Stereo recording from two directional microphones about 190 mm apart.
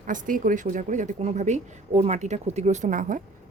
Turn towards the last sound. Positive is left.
turn(degrees=-45)  # may be behind; listen again after turning